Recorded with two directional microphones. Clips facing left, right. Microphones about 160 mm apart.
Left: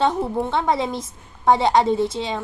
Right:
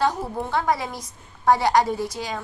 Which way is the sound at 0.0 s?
25° left (ahead or behind).